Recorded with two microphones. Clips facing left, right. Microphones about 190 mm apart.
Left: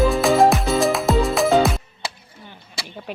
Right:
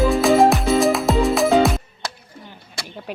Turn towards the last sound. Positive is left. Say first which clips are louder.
# right 1 dB
turn(degrees=0)  # may be behind; listen again after turning